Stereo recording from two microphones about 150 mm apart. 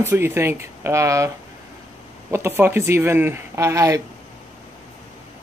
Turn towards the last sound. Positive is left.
turn(degrees=-20)  # may be behind; listen again after turning